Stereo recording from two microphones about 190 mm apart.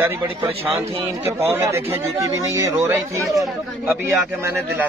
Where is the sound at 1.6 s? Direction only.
15° right (ahead or behind).